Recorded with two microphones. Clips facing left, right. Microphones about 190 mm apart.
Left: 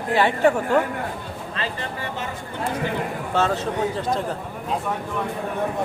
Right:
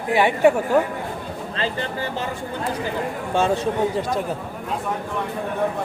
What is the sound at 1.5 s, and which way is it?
Speech, 30° right (ahead or behind).